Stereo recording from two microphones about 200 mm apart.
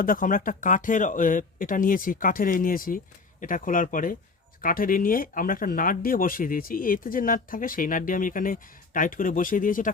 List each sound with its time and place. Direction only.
0.0 s speech: 45° left (ahead or behind)